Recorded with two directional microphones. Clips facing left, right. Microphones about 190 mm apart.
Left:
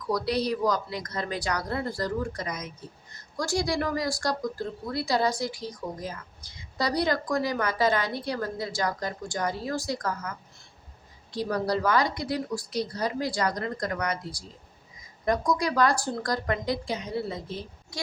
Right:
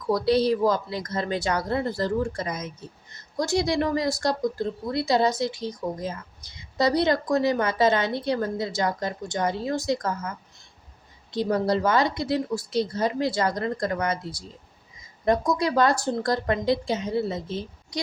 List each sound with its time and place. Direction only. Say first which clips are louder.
0.1 s speech: right 6 dB; 25° right (ahead or behind)